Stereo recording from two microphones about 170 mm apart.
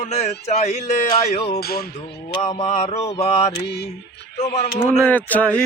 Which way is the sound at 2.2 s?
35° left (ahead or behind).